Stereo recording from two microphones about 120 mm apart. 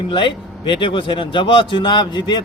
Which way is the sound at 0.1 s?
40° left (ahead or behind).